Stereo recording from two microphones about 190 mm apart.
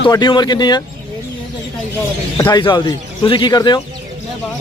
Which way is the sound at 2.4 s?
25° left (ahead or behind).